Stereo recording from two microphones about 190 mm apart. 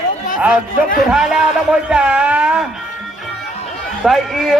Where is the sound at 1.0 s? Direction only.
Centre (ahead or behind).